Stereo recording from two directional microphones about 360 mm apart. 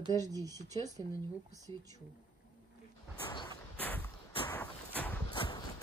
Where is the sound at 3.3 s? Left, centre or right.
Centre.